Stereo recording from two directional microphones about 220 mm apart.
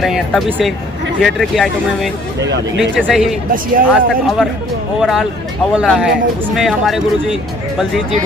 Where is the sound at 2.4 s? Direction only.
55° right (ahead or behind).